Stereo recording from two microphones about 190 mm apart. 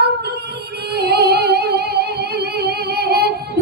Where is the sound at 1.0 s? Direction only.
60° right (ahead or behind).